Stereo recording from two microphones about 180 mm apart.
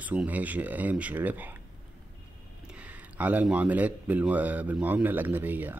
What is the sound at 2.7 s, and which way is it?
Speech, 5° right (ahead or behind).